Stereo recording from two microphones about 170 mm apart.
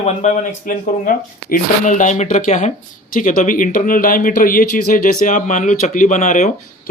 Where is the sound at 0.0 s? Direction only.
45° left (ahead or behind).